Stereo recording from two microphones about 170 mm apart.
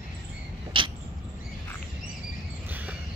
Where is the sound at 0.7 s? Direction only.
30° right (ahead or behind).